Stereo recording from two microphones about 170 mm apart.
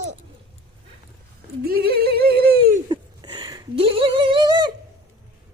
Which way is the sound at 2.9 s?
25° right (ahead or behind).